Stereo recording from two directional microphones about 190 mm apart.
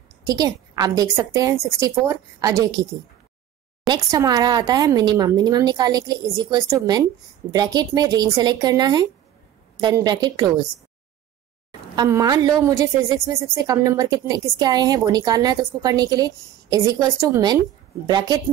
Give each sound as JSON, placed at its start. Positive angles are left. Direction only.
{"t": 0.2, "sound": "a woman's voice", "side_deg": -20}
{"t": 11.9, "sound": "a woman's voice", "side_deg": -20}